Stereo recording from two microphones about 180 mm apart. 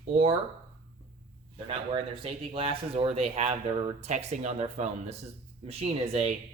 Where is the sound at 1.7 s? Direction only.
30° right (ahead or behind).